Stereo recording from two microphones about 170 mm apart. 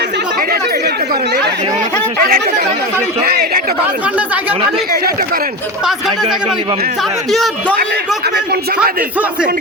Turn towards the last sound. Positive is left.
turn(degrees=0)  # may be behind; listen again after turning